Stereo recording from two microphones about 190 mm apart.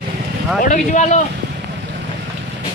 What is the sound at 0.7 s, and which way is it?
Speech, 40° left (ahead or behind).